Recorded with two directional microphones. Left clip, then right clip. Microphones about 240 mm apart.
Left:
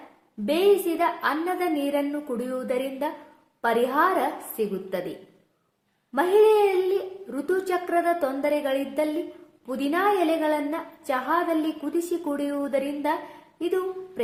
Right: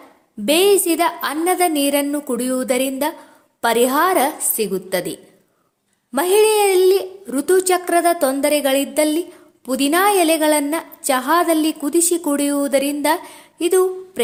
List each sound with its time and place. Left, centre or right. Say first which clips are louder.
0.4 s a woman's voice: right 6 dB; right
6.1 s a woman's voice: right 4 dB; right